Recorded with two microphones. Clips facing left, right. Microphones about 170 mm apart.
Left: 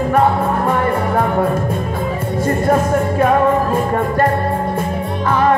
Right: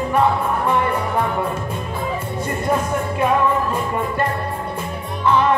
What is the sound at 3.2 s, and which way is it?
Music, 50° left (ahead or behind).